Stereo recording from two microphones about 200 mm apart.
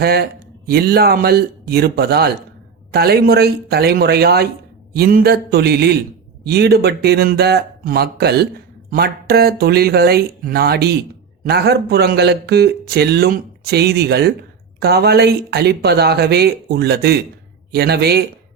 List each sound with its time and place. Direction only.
0.0 s speech: 50° right (ahead or behind)